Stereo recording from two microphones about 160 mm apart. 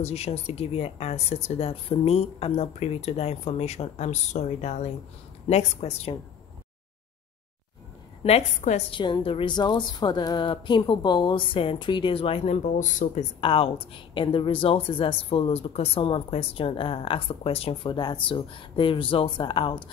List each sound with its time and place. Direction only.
0.0 s speech: 40° left (ahead or behind)
8.2 s a woman's voice: 40° left (ahead or behind)
8.9 s a woman's voice: 30° left (ahead or behind)
12.7 s a woman's voice: 50° left (ahead or behind)
13.4 s speech: 35° left (ahead or behind)